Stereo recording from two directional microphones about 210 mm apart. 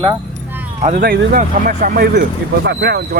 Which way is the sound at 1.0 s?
50° right (ahead or behind).